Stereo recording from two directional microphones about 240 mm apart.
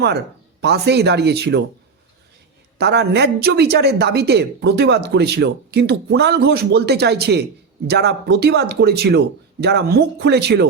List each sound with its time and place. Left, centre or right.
0.6 s speech: right
2.7 s speech: right